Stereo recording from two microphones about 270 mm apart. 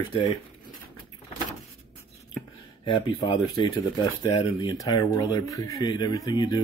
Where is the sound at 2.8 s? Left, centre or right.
Centre.